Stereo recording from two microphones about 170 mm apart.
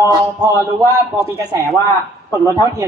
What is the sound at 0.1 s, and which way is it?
Speech, 20° right (ahead or behind).